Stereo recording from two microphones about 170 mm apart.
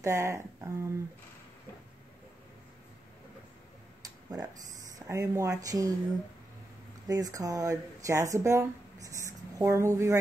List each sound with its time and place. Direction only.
0.0 s speech: 15° right (ahead or behind)
4.3 s a sound: 20° right (ahead or behind)
5.0 s speech: 15° right (ahead or behind)
7.1 s speech: 20° right (ahead or behind)